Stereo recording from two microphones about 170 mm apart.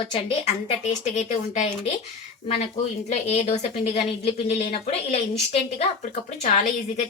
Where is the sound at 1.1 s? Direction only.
45° left (ahead or behind).